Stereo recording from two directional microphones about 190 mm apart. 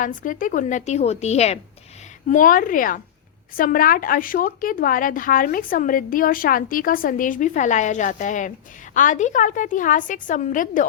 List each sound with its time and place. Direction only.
0.0 s a woman's voice: 45° left (ahead or behind)